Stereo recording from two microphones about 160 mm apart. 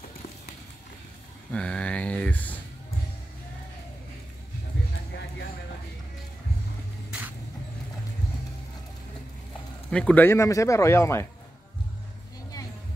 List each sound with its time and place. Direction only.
1.5 s speech: 5° left (ahead or behind)
7.1 s vehicle: 10° right (ahead or behind)
9.8 s speech: 5° left (ahead or behind)